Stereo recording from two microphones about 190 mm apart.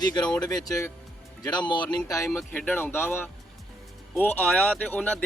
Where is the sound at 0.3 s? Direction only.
5° left (ahead or behind).